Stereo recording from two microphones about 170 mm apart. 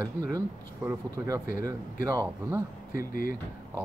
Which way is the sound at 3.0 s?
55° left (ahead or behind).